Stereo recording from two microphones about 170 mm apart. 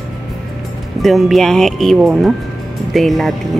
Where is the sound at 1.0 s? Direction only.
Centre (ahead or behind).